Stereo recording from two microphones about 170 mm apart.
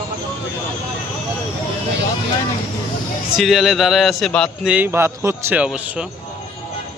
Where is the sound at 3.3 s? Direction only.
Centre (ahead or behind).